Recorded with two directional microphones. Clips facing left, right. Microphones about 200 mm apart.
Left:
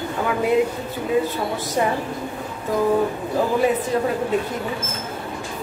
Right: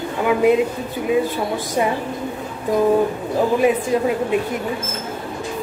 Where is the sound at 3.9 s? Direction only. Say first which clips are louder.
Right 3 dB; 15° right (ahead or behind).